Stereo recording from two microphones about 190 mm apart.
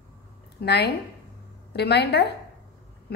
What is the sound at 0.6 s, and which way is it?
A woman's voice, 60° left (ahead or behind).